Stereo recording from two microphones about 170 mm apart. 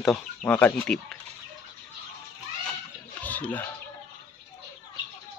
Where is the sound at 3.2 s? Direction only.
10° left (ahead or behind).